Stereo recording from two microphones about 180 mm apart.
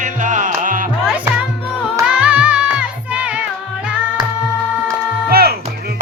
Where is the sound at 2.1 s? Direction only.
5° right (ahead or behind).